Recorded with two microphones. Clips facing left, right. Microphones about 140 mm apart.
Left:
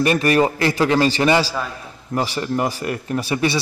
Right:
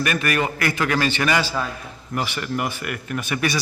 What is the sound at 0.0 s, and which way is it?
Speech, 30° left (ahead or behind).